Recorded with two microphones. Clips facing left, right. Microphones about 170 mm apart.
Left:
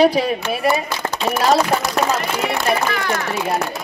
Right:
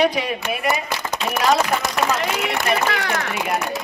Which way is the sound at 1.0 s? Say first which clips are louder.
Left 2 dB; 50° left (ahead or behind).